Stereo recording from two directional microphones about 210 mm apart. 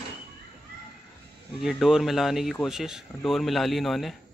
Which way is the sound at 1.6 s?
Centre (ahead or behind).